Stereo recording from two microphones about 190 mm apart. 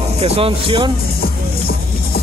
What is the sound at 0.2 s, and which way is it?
Speech, 30° right (ahead or behind).